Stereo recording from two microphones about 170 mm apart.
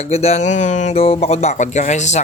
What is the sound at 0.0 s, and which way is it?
Speech, 40° left (ahead or behind).